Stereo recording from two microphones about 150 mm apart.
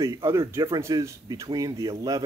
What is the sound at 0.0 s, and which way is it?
Speech, 20° right (ahead or behind).